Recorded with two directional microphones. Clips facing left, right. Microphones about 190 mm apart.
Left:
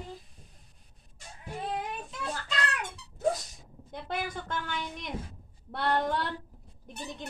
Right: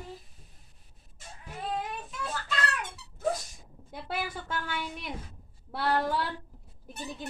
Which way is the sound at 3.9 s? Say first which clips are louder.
Left 1 dB; 5° right (ahead or behind).